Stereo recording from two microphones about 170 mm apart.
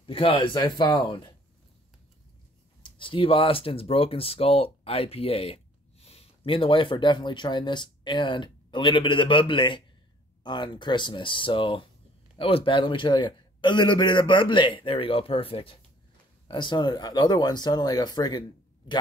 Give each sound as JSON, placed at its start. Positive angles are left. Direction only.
{"t": 0.0, "sound": "a man's voice", "side_deg": 30}
{"t": 2.8, "sound": "a man's voice", "side_deg": 30}